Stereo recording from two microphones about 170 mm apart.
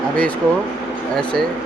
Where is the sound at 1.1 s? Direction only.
5° left (ahead or behind).